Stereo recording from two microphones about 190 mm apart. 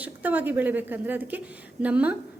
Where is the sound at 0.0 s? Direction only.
10° right (ahead or behind).